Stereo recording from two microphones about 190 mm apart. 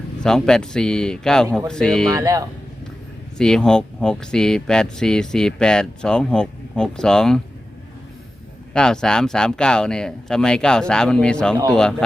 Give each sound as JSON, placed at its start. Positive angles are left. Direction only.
{"t": 0.2, "sound": "speech", "side_deg": 5}
{"t": 2.0, "sound": "speech", "side_deg": -15}
{"t": 3.3, "sound": "speech", "side_deg": 5}
{"t": 8.7, "sound": "speech", "side_deg": 5}